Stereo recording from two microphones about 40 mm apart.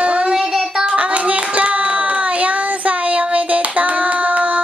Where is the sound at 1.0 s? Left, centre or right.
Right.